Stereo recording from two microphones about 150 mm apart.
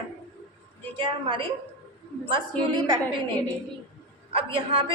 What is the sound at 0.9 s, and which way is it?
Speech, 35° right (ahead or behind).